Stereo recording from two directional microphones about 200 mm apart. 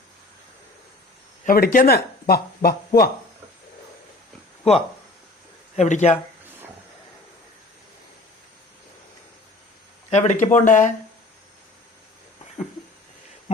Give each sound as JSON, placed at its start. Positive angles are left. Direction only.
{"t": 1.5, "sound": "speech", "side_deg": 45}
{"t": 5.7, "sound": "speech", "side_deg": 35}
{"t": 10.1, "sound": "speech", "side_deg": 35}